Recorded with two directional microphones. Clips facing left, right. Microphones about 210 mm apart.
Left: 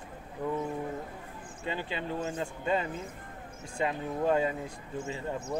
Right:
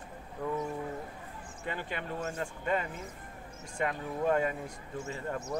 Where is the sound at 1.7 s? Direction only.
25° left (ahead or behind).